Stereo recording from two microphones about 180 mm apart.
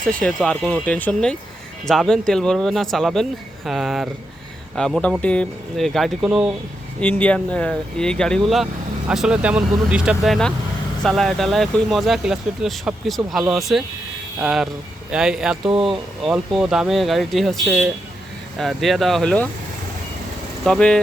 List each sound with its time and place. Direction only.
0.1 s speech: 5° left (ahead or behind)
7.0 s speech: 10° left (ahead or behind)
15.6 s speech: 30° right (ahead or behind)
15.9 s speech: centre (ahead or behind)
20.7 s speech: 5° left (ahead or behind)